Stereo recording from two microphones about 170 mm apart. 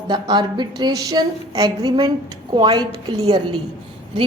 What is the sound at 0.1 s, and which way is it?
A woman's voice, 25° right (ahead or behind).